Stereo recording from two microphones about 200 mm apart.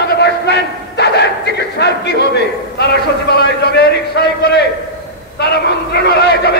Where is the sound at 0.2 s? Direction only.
55° left (ahead or behind).